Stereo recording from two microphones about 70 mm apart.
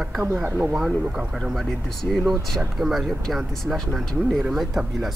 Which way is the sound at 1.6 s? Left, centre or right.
Centre.